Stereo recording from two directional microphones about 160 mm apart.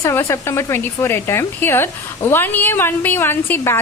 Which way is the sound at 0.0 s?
15° left (ahead or behind).